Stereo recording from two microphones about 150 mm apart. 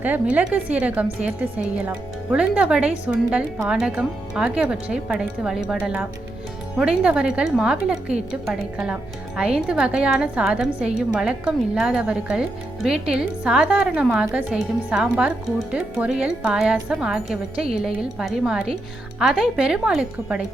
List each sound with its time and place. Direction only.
0.0 s speech: 10° right (ahead or behind)